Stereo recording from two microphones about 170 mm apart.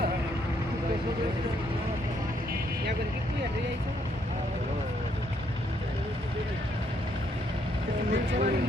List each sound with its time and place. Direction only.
8.1 s speech: 50° right (ahead or behind)